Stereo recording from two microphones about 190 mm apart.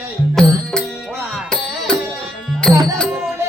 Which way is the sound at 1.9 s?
15° right (ahead or behind).